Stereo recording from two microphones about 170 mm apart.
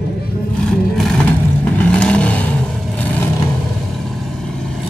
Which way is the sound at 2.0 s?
5° left (ahead or behind).